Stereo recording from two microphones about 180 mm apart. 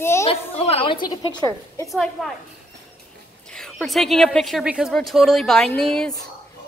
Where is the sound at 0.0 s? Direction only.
15° left (ahead or behind).